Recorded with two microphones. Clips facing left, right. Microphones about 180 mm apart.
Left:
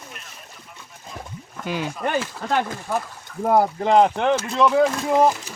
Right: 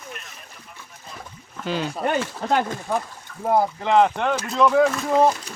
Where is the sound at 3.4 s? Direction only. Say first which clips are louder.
Left 2 dB; 45° left (ahead or behind).